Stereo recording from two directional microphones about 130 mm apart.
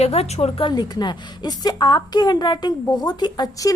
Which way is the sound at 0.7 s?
35° left (ahead or behind).